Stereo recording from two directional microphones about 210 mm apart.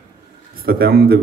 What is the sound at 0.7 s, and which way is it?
Speech, 45° right (ahead or behind).